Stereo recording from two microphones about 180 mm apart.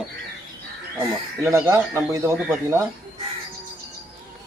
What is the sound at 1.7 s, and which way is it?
Speech, 20° right (ahead or behind).